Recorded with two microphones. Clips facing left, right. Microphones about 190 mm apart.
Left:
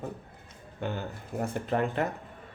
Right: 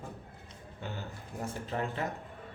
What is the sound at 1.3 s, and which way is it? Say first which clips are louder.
Speech: left 7 dB; 60° left (ahead or behind).